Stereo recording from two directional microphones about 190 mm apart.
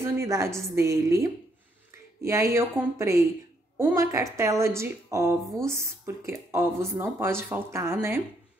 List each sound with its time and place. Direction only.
0.0 s speech: 15° right (ahead or behind)